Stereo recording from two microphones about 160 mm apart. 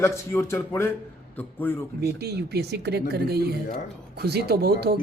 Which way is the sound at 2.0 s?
90° right.